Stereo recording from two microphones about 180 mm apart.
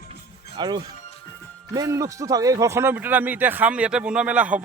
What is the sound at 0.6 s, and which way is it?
Speech, 25° right (ahead or behind).